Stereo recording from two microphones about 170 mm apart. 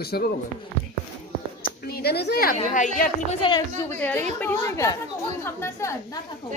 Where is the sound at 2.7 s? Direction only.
45° left (ahead or behind).